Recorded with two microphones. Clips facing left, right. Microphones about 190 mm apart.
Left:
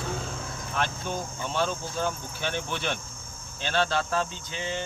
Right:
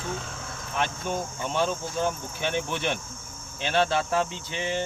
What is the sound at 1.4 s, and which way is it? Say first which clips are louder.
Speech: right 1 dB; 15° right (ahead or behind).